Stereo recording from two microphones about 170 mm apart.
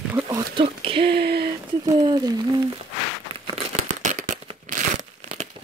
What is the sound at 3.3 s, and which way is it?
Crumpling, 35° right (ahead or behind).